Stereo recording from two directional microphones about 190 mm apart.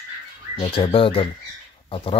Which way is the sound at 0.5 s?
30° left (ahead or behind).